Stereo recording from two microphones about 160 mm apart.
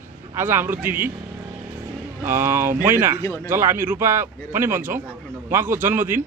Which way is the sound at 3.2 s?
20° left (ahead or behind).